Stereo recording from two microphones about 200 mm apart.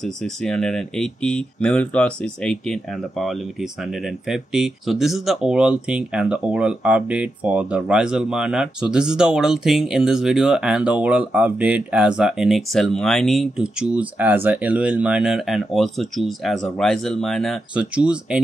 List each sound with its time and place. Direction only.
0.0 s speech: 5° left (ahead or behind)